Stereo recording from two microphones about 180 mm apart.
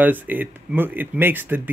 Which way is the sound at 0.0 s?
10° right (ahead or behind).